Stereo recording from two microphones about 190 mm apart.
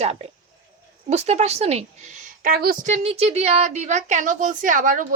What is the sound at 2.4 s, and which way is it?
Speech, 50° right (ahead or behind).